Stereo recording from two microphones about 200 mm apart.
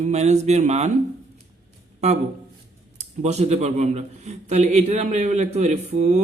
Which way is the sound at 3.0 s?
35° right (ahead or behind).